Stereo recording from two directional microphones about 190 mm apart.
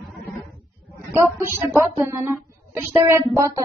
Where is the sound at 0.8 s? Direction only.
10° right (ahead or behind).